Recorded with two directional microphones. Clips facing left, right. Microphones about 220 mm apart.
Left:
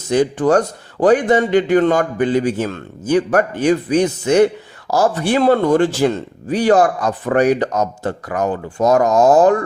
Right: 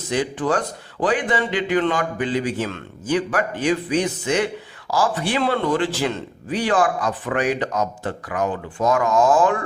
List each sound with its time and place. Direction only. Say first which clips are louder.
0.1 s a man's voice: left 8 dB; 45° left (ahead or behind)